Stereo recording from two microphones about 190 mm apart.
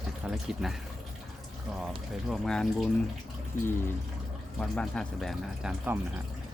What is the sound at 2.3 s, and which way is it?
Speech, centre (ahead or behind).